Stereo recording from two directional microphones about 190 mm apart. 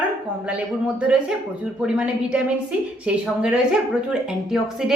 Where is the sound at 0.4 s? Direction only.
5° right (ahead or behind).